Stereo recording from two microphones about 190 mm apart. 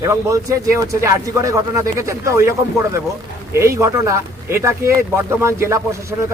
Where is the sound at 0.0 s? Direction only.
15° right (ahead or behind).